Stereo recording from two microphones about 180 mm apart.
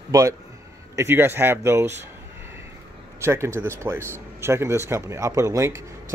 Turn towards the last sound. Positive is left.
turn(degrees=-15)  # may be behind; listen again after turning